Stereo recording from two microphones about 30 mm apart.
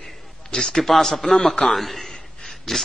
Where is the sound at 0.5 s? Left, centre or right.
Left.